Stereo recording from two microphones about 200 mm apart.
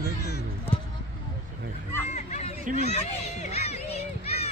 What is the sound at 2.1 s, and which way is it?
Hubbub, 35° left (ahead or behind).